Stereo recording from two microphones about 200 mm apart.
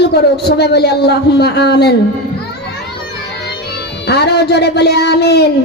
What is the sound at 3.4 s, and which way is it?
Speech, 55° left (ahead or behind).